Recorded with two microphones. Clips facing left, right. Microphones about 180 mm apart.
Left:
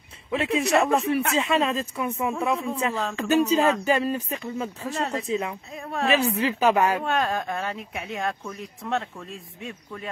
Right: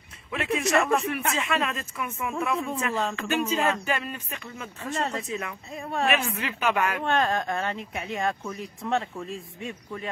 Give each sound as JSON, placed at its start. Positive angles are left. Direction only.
{"t": 0.3, "sound": "speech", "side_deg": 30}
{"t": 0.7, "sound": "speech", "side_deg": 0}
{"t": 1.1, "sound": "speech", "side_deg": 30}
{"t": 2.9, "sound": "speech", "side_deg": 0}
{"t": 3.2, "sound": "speech", "side_deg": 35}
{"t": 4.9, "sound": "speech", "side_deg": 0}
{"t": 5.3, "sound": "speech", "side_deg": 30}
{"t": 7.0, "sound": "speech", "side_deg": 0}